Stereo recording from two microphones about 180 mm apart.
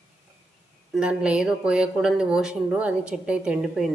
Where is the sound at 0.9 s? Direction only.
5° right (ahead or behind).